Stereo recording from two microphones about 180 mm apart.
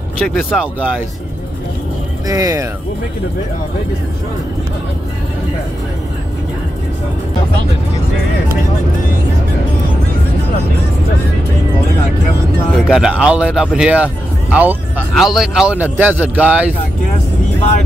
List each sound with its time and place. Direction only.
0.3 s speech: 10° right (ahead or behind)
2.2 s speech: 20° right (ahead or behind)
12.7 s speech: centre (ahead or behind)